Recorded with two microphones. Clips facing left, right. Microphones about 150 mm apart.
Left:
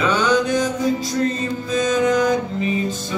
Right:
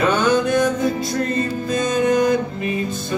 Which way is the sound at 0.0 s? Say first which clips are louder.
Right 1 dB; 55° right (ahead or behind).